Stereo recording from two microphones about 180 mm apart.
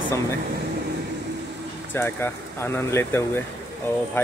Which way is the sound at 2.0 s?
10° left (ahead or behind).